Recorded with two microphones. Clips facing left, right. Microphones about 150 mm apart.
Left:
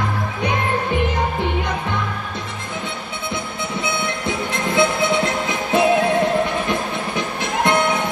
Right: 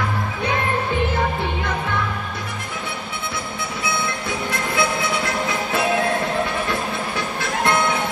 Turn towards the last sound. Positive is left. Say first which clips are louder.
# left 2 dB
turn(degrees=20)  # may be behind; listen again after turning